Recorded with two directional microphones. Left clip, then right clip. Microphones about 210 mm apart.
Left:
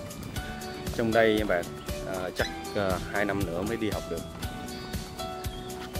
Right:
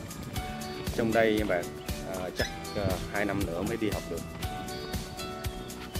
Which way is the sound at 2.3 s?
20° left (ahead or behind).